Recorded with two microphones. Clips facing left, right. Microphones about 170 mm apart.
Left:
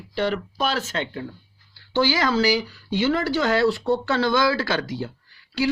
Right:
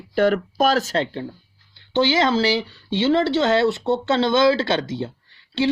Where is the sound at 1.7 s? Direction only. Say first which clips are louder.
Right 3 dB; 20° right (ahead or behind).